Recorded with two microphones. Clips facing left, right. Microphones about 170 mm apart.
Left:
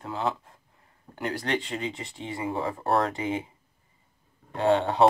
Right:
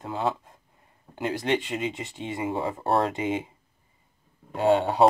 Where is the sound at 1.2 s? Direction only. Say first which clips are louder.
Right 3 dB; 20° right (ahead or behind).